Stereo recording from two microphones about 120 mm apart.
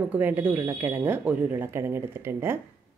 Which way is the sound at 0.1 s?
15° right (ahead or behind).